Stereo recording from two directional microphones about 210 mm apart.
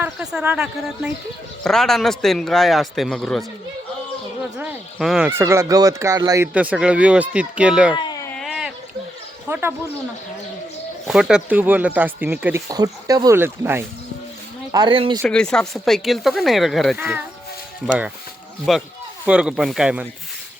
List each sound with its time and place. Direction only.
0.0 s speech: 5° right (ahead or behind)
4.5 s speech: 5° right (ahead or behind)
7.9 s cat: 20° left (ahead or behind)
8.4 s a sound: centre (ahead or behind)
9.5 s speech: 10° right (ahead or behind)
11.0 s speech: centre (ahead or behind)
14.7 s speech: 20° right (ahead or behind)
15.2 s speech: 5° left (ahead or behind)
18.7 s speech: centre (ahead or behind)